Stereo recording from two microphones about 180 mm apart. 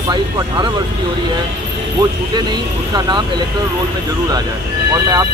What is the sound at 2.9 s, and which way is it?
Speech, 20° right (ahead or behind).